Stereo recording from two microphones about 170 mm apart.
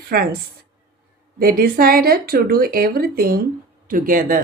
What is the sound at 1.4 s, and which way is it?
Speech, 60° right (ahead or behind).